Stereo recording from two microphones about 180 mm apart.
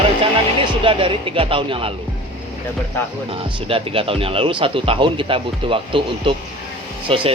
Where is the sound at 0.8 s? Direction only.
30° right (ahead or behind).